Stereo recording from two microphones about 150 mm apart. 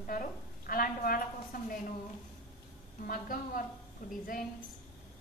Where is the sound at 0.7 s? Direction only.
70° left (ahead or behind).